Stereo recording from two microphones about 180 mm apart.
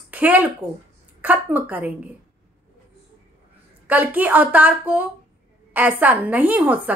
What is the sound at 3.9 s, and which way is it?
A woman's voice, 10° right (ahead or behind).